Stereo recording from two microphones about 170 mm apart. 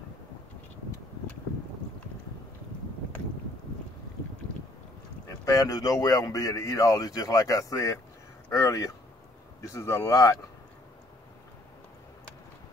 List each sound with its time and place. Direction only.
5.4 s speech: 20° left (ahead or behind)